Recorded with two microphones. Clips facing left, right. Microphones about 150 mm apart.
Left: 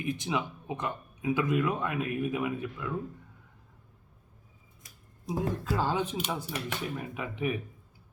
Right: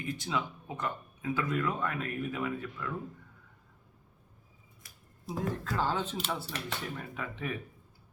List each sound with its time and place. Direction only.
0.0 s speech: 20° left (ahead or behind)
5.3 s speech: centre (ahead or behind)
5.6 s speech: 10° left (ahead or behind)